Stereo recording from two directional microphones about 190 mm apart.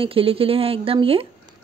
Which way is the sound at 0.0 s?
30° right (ahead or behind).